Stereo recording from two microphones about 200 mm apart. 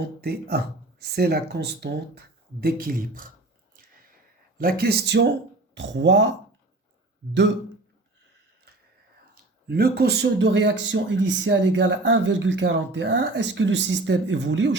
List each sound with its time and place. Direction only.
0.0 s speech: 50° right (ahead or behind)
4.5 s speech: 50° right (ahead or behind)
9.6 s speech: 50° right (ahead or behind)